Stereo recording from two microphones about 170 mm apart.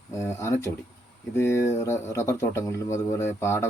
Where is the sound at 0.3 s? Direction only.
15° left (ahead or behind).